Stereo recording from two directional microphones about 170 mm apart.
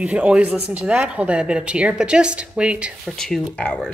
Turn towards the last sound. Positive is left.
turn(degrees=10)  # may be behind; listen again after turning